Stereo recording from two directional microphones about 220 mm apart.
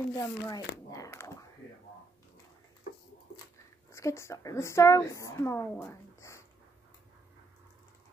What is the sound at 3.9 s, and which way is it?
A woman's voice, 15° left (ahead or behind).